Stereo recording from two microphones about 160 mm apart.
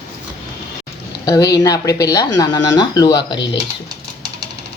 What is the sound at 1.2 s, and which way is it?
Speech, 25° left (ahead or behind).